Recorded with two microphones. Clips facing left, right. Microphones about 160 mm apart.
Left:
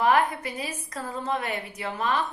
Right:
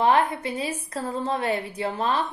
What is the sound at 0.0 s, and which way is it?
A woman's voice, 25° right (ahead or behind).